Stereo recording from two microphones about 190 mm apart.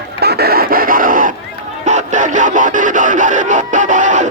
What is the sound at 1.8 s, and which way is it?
Music, 40° right (ahead or behind).